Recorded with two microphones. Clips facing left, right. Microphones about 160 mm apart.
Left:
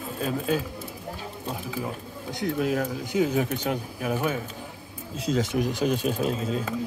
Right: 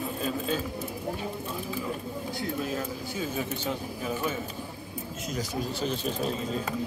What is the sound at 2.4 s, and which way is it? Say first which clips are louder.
Speech: left 7 dB; 75° left (ahead or behind).